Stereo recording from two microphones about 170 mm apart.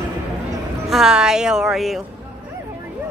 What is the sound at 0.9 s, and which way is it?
A woman's voice, 5° right (ahead or behind).